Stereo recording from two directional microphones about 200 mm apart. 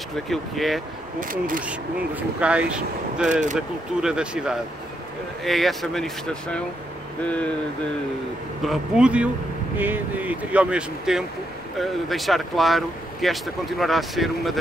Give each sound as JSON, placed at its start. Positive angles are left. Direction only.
{"t": 0.3, "sound": "speech", "side_deg": 0}
{"t": 1.2, "sound": "speech", "side_deg": -45}
{"t": 1.6, "sound": "speech", "side_deg": -5}
{"t": 8.6, "sound": "speech", "side_deg": -5}